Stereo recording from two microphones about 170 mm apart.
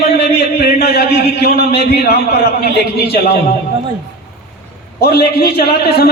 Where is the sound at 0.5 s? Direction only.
70° left (ahead or behind).